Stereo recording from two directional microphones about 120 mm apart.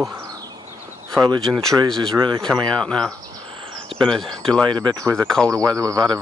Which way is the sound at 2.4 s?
5° left (ahead or behind).